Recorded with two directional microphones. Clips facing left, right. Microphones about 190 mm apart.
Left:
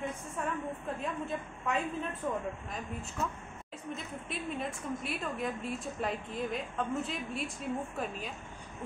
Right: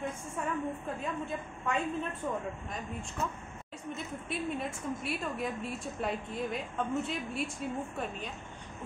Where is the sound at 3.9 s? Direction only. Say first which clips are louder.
Right 2 dB; centre (ahead or behind).